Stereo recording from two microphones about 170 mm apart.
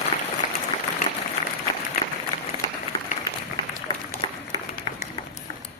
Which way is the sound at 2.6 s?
20° left (ahead or behind).